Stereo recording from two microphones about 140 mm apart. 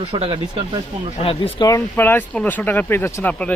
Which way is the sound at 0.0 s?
35° right (ahead or behind).